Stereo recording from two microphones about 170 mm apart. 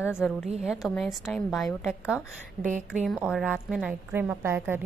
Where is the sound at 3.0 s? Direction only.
Centre (ahead or behind).